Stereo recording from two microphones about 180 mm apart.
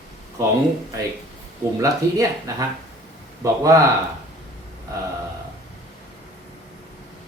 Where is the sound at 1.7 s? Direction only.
20° right (ahead or behind).